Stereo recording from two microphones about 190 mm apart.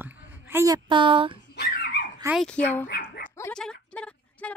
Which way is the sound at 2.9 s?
50° left (ahead or behind).